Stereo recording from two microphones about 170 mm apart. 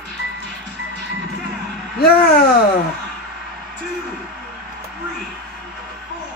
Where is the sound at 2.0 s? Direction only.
60° left (ahead or behind).